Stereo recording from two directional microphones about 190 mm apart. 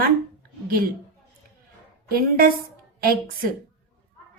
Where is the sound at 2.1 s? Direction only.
50° right (ahead or behind).